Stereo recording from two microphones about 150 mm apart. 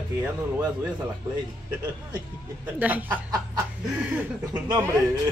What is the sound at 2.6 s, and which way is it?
Speech, 10° right (ahead or behind).